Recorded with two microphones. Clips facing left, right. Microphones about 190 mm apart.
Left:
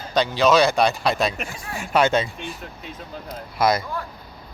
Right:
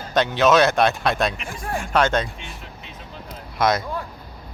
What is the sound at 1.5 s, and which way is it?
Speech, 50° right (ahead or behind).